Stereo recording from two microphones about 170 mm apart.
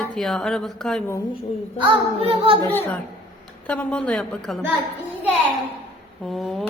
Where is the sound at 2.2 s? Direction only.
35° right (ahead or behind).